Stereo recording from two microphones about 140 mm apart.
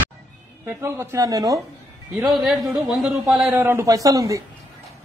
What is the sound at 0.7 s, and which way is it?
Speech, 20° right (ahead or behind).